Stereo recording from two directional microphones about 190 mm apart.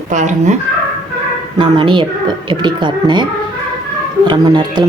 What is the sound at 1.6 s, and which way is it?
Speech, 25° right (ahead or behind).